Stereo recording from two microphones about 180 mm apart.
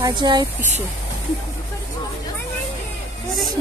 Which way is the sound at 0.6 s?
40° right (ahead or behind).